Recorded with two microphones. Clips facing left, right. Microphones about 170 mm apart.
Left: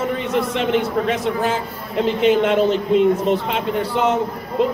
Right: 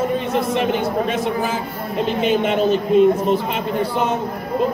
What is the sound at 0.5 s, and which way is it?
A man's voice, 75° left (ahead or behind).